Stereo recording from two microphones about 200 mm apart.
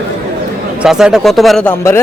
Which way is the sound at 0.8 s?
5° right (ahead or behind).